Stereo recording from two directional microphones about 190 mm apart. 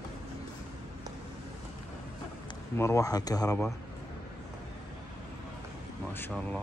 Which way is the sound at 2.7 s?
15° left (ahead or behind).